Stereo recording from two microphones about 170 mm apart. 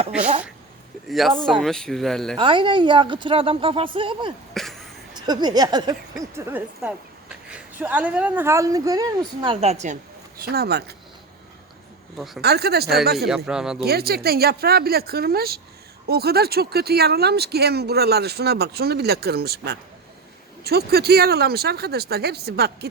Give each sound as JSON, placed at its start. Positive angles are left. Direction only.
{"t": 1.0, "sound": "speech", "side_deg": 0}
{"t": 2.4, "sound": "a woman's voice", "side_deg": -30}
{"t": 4.5, "sound": "a sound", "side_deg": 0}
{"t": 5.2, "sound": "speech", "side_deg": -25}
{"t": 10.4, "sound": "speech", "side_deg": -65}
{"t": 12.1, "sound": "speech", "side_deg": 0}
{"t": 12.4, "sound": "speech", "side_deg": -70}
{"t": 13.1, "sound": "speech", "side_deg": 0}
{"t": 13.8, "sound": "speech", "side_deg": -65}